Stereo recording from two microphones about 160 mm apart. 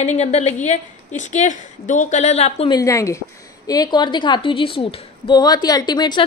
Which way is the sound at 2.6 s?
20° left (ahead or behind).